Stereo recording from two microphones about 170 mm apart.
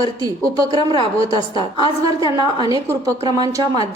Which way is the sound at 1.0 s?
30° left (ahead or behind).